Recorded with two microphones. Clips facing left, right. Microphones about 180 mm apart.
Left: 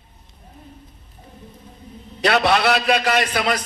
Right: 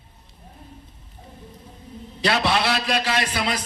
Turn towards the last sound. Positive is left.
turn(degrees=65)  # may be behind; listen again after turning